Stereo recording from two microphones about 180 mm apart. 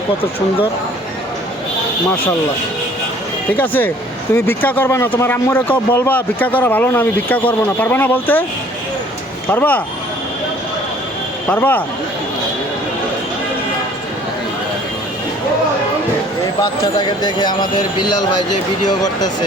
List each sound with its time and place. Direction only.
3.5 s a man's voice: 10° left (ahead or behind)
9.5 s a man's voice: 10° left (ahead or behind)
11.4 s a man's voice: 10° left (ahead or behind)
16.8 s speech: 25° left (ahead or behind)